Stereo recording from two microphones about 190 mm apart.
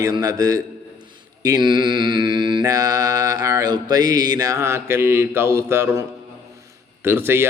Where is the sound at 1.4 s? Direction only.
20° right (ahead or behind).